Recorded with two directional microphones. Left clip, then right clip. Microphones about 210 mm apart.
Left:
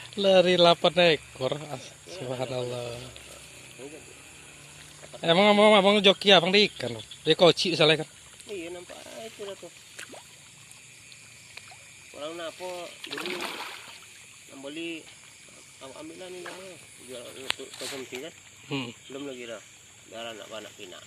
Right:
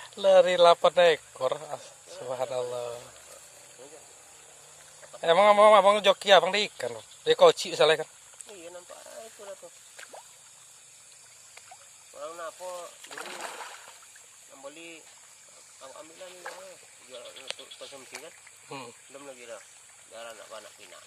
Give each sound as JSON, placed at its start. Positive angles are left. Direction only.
{"t": 0.0, "sound": "speech", "side_deg": -10}
{"t": 5.2, "sound": "speech", "side_deg": -10}
{"t": 12.2, "sound": "speech", "side_deg": -45}
{"t": 13.0, "sound": "speech", "side_deg": -10}
{"t": 13.3, "sound": "speech", "side_deg": 5}
{"t": 14.7, "sound": "speech", "side_deg": -40}
{"t": 15.8, "sound": "speech", "side_deg": -25}
{"t": 18.7, "sound": "speech", "side_deg": -10}
{"t": 19.1, "sound": "speech", "side_deg": -35}